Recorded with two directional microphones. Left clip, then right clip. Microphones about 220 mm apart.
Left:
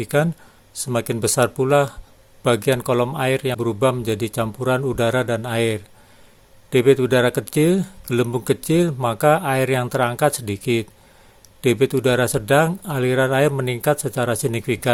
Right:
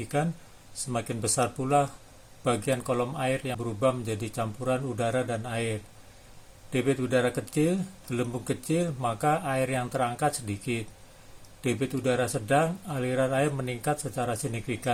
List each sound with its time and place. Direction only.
0.7 s speech: 45° left (ahead or behind)